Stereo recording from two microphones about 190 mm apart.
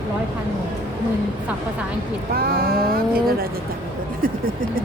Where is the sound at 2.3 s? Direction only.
55° right (ahead or behind).